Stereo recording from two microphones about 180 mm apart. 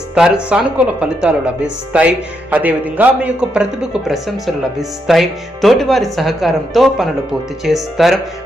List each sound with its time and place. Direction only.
0.1 s speech: 5° right (ahead or behind)